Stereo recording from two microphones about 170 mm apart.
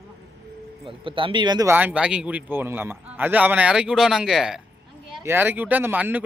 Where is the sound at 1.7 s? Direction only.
10° right (ahead or behind).